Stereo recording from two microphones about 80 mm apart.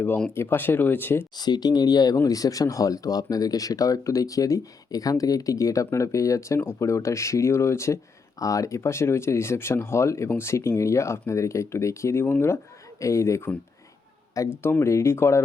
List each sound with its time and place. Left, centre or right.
0.3 s speech: left
1.4 s speech: left
14.5 s speech: left